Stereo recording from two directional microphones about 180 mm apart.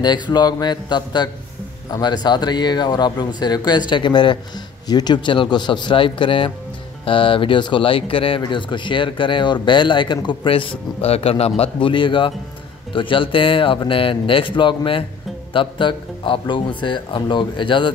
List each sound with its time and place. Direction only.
0.0 s speech: 25° left (ahead or behind)